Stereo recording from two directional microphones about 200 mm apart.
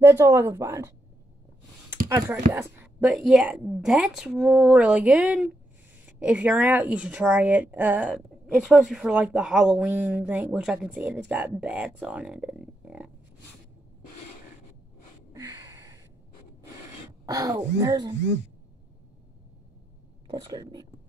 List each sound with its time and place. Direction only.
0.0 s speech: 10° right (ahead or behind)
2.0 s a woman's voice: 15° right (ahead or behind)
15.3 s a sound: 15° right (ahead or behind)
17.3 s speech: 15° right (ahead or behind)
20.2 s speech: 25° right (ahead or behind)